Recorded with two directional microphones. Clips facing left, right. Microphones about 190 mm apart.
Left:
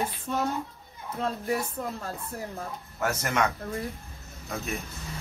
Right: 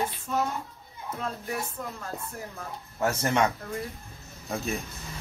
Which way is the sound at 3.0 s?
25° right (ahead or behind).